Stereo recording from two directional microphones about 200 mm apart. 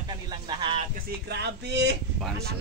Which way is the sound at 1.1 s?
55° right (ahead or behind).